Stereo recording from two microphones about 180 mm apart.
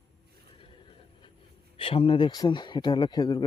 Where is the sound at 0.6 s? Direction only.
30° left (ahead or behind).